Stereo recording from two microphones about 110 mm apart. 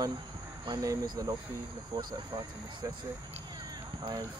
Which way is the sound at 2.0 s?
45° right (ahead or behind).